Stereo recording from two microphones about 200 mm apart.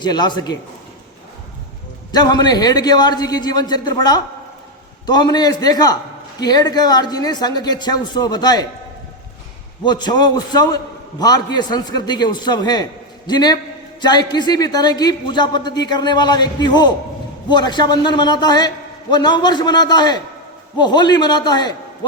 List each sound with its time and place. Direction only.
0.0 s a man's voice: 20° left (ahead or behind)
2.1 s a man's voice: 20° left (ahead or behind)
9.8 s a man's voice: 20° left (ahead or behind)